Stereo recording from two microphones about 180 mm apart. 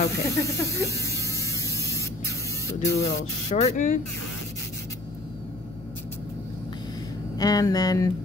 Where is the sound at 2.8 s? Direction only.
70° left (ahead or behind).